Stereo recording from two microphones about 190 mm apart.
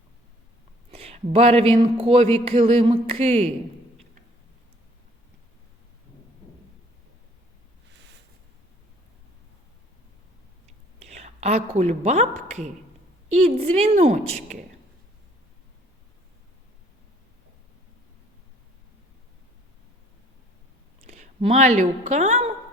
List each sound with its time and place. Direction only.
0.9 s speech: 30° right (ahead or behind)
7.9 s a sound: 65° right (ahead or behind)
11.0 s a woman's voice: 35° right (ahead or behind)
21.0 s speech: 35° right (ahead or behind)